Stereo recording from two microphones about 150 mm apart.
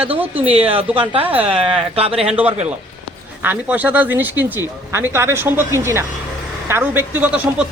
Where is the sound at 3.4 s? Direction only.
10° right (ahead or behind).